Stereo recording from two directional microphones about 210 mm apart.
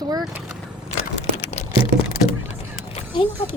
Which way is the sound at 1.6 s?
30° left (ahead or behind).